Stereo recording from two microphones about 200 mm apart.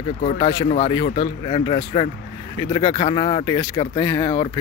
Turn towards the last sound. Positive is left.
turn(degrees=20)  # may be behind; listen again after turning